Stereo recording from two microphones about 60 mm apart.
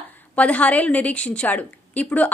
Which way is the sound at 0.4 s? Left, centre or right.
Left.